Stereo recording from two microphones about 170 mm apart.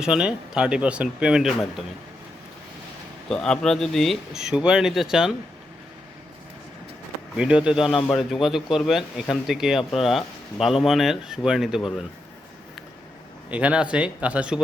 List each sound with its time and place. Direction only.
0.0 s speech: 5° right (ahead or behind)
3.2 s speech: 5° left (ahead or behind)
7.3 s speech: 5° right (ahead or behind)
13.5 s speech: 5° right (ahead or behind)